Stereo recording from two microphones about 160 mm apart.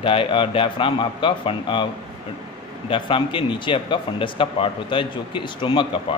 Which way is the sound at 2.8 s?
30° left (ahead or behind).